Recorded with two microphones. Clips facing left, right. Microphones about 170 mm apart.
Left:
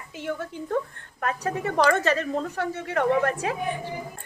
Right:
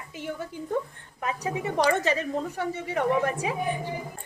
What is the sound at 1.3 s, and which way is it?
A woman's voice, 10° right (ahead or behind).